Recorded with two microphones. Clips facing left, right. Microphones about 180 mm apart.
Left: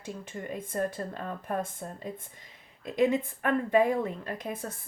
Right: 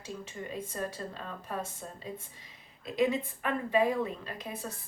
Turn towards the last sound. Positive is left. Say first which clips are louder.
# left 4 dB
turn(degrees=50)  # may be behind; listen again after turning